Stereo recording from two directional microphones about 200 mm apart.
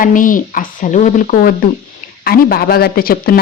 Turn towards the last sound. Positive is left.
turn(degrees=45)  # may be behind; listen again after turning